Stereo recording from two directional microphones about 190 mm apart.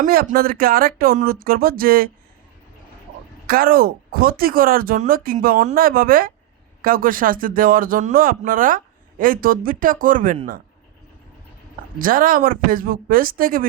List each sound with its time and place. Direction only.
0.0 s speech: 50° right (ahead or behind)
3.4 s speech: 50° right (ahead or behind)
11.9 s speech: 45° right (ahead or behind)